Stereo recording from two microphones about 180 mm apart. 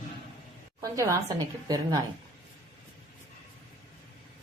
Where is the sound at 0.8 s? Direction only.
20° right (ahead or behind).